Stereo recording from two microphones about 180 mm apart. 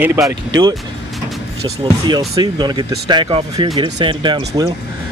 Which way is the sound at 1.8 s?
25° right (ahead or behind).